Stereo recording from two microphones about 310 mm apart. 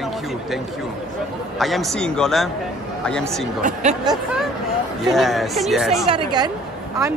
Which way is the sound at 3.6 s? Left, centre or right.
Right.